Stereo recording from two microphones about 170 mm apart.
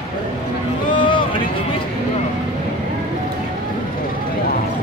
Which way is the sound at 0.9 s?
30° left (ahead or behind).